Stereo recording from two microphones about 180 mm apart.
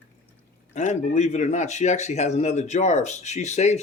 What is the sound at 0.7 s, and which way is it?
Speech, 40° left (ahead or behind).